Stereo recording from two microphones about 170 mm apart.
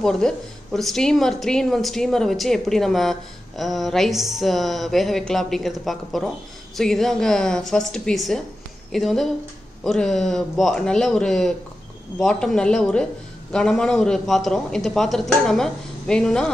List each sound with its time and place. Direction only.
0.0 s a woman's voice: centre (ahead or behind)